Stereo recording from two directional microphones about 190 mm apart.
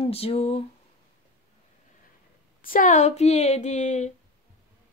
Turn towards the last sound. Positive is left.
turn(degrees=40)  # may be behind; listen again after turning